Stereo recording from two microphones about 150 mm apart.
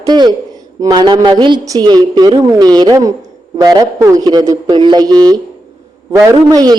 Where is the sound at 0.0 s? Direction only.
25° right (ahead or behind).